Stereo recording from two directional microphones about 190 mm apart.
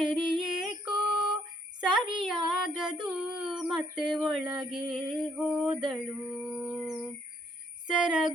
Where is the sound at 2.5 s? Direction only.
5° right (ahead or behind).